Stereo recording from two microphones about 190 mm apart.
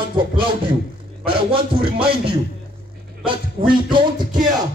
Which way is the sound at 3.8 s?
25° right (ahead or behind).